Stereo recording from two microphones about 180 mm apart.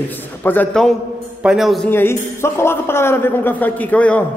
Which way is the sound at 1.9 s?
15° left (ahead or behind).